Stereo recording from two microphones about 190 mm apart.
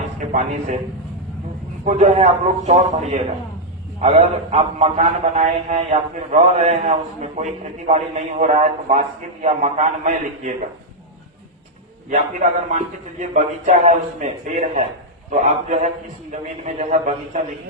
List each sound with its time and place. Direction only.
0.3 s a man's voice: 40° right (ahead or behind)
1.8 s a man's voice: 35° right (ahead or behind)
12.0 s a man's voice: 40° right (ahead or behind)